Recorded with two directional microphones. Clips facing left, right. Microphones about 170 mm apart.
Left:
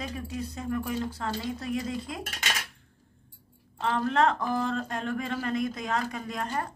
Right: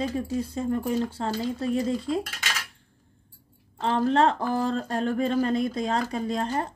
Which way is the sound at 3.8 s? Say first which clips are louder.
Right 3 dB; 30° right (ahead or behind).